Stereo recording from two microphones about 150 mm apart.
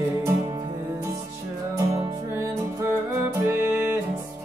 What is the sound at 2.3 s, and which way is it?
Music, 15° right (ahead or behind).